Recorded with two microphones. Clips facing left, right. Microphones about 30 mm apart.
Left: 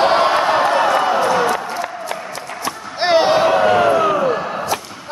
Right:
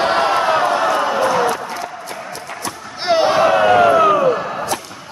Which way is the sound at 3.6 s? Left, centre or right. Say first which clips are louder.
Right 2 dB; centre.